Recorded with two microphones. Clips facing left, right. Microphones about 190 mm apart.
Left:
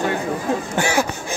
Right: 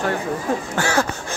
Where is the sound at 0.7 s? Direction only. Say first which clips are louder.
Left 1 dB; 15° left (ahead or behind).